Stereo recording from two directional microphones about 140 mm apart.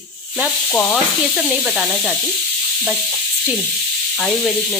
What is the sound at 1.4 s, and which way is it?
Speech, 5° right (ahead or behind).